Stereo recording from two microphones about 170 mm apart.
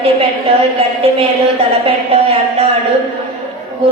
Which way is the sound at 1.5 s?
35° right (ahead or behind).